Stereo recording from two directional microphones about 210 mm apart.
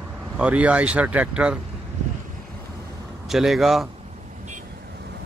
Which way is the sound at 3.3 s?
Centre (ahead or behind).